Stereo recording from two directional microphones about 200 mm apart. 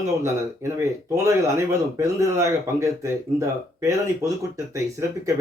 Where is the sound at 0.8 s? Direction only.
15° right (ahead or behind).